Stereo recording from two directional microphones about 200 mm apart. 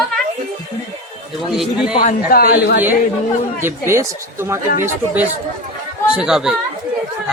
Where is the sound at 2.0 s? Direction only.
45° left (ahead or behind).